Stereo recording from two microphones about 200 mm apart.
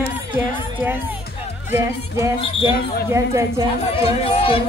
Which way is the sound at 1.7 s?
10° right (ahead or behind).